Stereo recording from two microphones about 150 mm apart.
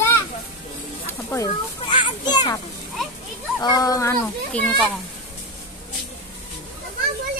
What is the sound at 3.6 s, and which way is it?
Speech, 25° left (ahead or behind).